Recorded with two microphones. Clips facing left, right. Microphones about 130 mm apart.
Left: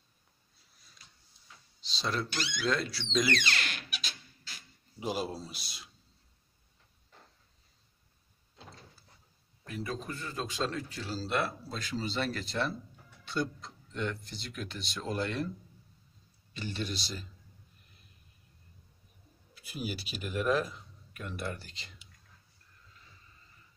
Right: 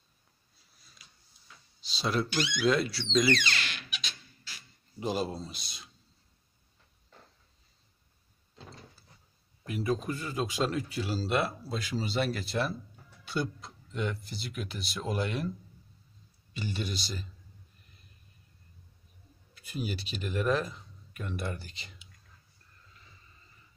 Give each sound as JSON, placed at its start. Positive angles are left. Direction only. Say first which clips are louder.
{"t": 1.8, "sound": "speech", "louder": "right 4 dB", "side_deg": -5}
{"t": 3.4, "sound": "a sound", "louder": "even", "side_deg": 40}
{"t": 5.0, "sound": "speech", "louder": "right 2 dB", "side_deg": 5}
{"t": 9.7, "sound": "speech", "louder": "right 7 dB", "side_deg": -15}
{"t": 16.5, "sound": "speech", "louder": "right 1 dB", "side_deg": -5}
{"t": 19.5, "sound": "speech", "louder": "right 2 dB", "side_deg": 5}